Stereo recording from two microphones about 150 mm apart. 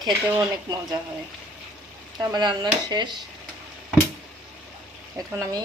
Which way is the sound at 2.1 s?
30° right (ahead or behind).